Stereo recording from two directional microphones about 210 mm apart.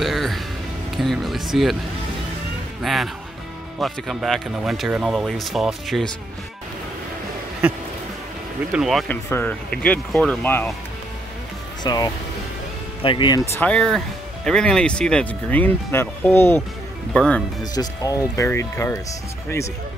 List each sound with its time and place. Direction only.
0.0 s music: centre (ahead or behind)
0.9 s speech: centre (ahead or behind)
2.8 s speech: centre (ahead or behind)
8.7 s speech: centre (ahead or behind)
11.8 s speech: 20° left (ahead or behind)
13.6 s speech: 5° left (ahead or behind)
17.7 s speech: 15° left (ahead or behind)